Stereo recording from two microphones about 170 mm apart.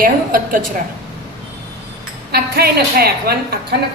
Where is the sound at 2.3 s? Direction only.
65° right (ahead or behind).